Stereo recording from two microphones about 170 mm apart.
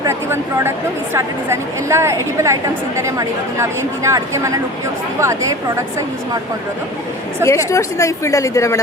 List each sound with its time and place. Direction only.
0.0 s speech: 15° right (ahead or behind)
7.4 s a woman's voice: 20° left (ahead or behind)